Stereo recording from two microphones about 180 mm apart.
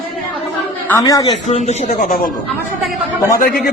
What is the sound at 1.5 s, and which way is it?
Speech, 35° left (ahead or behind).